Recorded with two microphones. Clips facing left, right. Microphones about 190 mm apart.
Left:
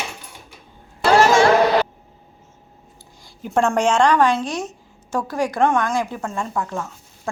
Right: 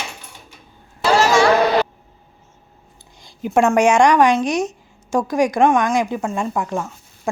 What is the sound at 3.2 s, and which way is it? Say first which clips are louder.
Speech: right 3 dB; 15° right (ahead or behind).